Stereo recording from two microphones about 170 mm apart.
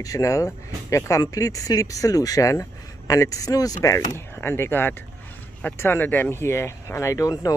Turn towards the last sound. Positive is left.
turn(degrees=20)  # may be behind; listen again after turning